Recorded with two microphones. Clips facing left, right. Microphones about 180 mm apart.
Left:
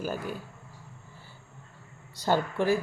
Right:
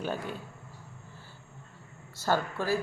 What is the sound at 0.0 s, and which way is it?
Speech, 5° left (ahead or behind).